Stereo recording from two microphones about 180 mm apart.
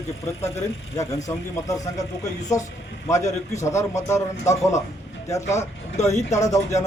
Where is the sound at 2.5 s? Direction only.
15° left (ahead or behind).